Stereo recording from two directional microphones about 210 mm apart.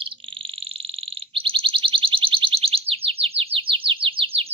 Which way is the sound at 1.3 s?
25° right (ahead or behind).